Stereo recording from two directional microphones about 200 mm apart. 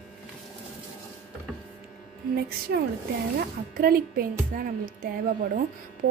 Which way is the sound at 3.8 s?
45° right (ahead or behind).